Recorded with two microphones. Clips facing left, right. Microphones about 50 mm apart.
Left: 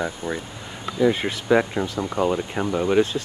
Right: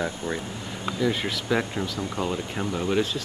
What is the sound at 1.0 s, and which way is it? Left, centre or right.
Speech, centre.